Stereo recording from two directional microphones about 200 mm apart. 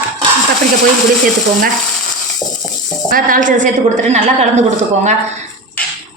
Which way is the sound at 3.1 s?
45° right (ahead or behind).